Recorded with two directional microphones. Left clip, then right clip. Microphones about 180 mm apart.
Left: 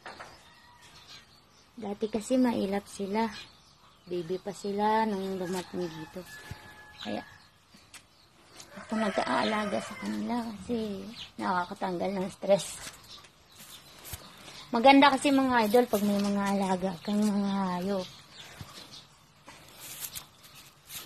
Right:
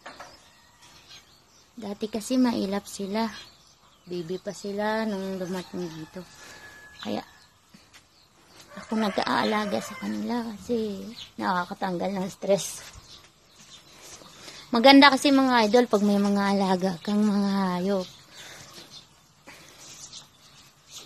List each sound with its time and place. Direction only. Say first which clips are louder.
1.8 s speech: even; 25° right (ahead or behind)
9.0 s a woman's voice: right 3 dB; 35° right (ahead or behind)
14.7 s a woman's voice: right 4 dB; 50° right (ahead or behind)